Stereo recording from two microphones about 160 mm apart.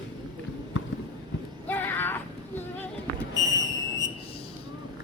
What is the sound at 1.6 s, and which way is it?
Child singing, 10° left (ahead or behind).